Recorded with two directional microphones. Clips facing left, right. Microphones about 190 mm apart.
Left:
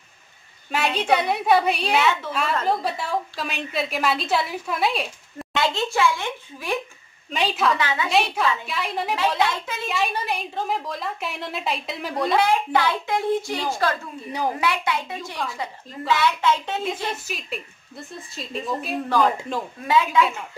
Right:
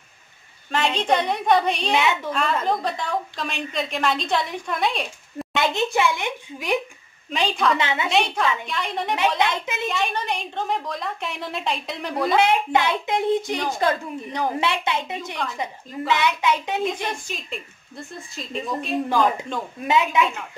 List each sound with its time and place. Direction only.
0.7 s a woman's voice: 10° left (ahead or behind)
2.0 s speech: 15° right (ahead or behind)
2.3 s a woman's voice: 5° left (ahead or behind)
5.4 s speech: 20° right (ahead or behind)
7.2 s a woman's voice: centre (ahead or behind)
7.7 s speech: 25° right (ahead or behind)
8.1 s a woman's voice: 5° left (ahead or behind)
9.4 s speech: 20° right (ahead or behind)
9.8 s a woman's voice: 5° left (ahead or behind)
12.4 s speech: 20° right (ahead or behind)
15.4 s a woman's voice: centre (ahead or behind)
16.1 s speech: 20° right (ahead or behind)
17.1 s a woman's voice: 5° left (ahead or behind)
19.8 s speech: 20° right (ahead or behind)